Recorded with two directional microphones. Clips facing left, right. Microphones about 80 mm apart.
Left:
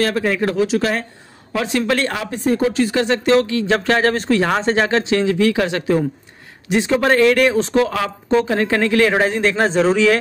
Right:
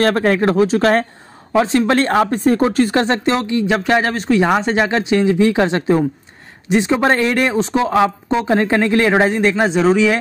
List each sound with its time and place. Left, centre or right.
0.0 s speech: right
1.5 s speech: right
3.3 s speech: right